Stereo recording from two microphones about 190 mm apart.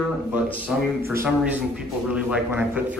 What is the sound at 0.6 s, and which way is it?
A man's voice, 10° right (ahead or behind).